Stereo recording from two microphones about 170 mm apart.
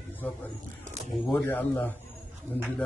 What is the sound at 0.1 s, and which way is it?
Speech, 10° left (ahead or behind).